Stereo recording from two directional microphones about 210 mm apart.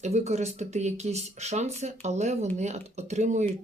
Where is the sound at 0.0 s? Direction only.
30° right (ahead or behind).